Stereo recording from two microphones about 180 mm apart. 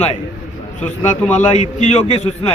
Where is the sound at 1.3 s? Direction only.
40° left (ahead or behind).